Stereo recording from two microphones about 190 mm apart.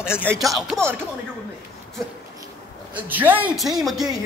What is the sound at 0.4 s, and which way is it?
Speech, centre (ahead or behind).